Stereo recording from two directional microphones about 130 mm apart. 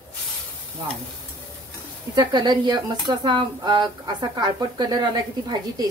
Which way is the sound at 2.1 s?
35° right (ahead or behind).